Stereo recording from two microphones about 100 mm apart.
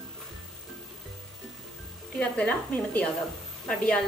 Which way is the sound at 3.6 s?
10° left (ahead or behind).